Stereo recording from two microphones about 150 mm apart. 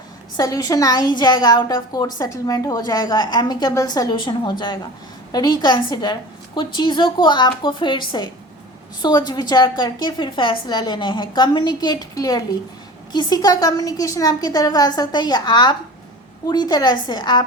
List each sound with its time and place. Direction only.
0.3 s a woman's voice: 25° left (ahead or behind)